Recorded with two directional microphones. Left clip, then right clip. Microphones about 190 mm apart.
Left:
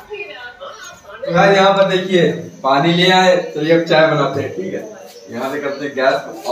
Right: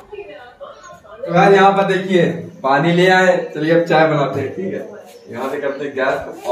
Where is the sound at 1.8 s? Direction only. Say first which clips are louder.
Left 2 dB; 10° right (ahead or behind).